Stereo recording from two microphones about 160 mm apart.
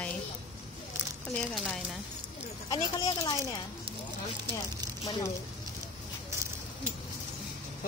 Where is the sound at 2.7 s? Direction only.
25° left (ahead or behind).